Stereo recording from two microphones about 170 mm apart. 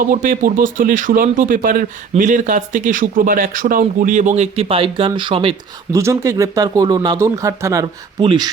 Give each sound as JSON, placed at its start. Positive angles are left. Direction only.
{"t": 0.0, "sound": "speech", "side_deg": -50}
{"t": 5.9, "sound": "speech", "side_deg": -15}
{"t": 8.2, "sound": "speech", "side_deg": -30}